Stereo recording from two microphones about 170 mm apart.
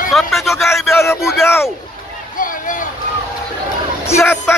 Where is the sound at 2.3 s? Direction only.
50° left (ahead or behind).